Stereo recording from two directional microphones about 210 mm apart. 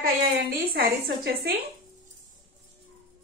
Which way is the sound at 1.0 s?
45° right (ahead or behind).